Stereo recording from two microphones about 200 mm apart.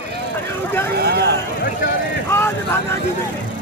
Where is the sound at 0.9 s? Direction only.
55° right (ahead or behind).